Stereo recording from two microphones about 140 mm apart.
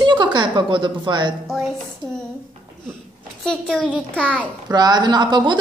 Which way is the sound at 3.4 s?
5° left (ahead or behind).